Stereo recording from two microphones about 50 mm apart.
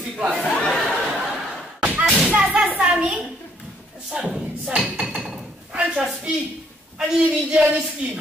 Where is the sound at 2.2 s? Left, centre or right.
Right.